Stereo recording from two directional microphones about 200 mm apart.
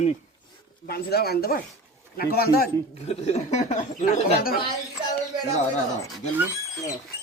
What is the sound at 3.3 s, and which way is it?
Speech, 35° left (ahead or behind).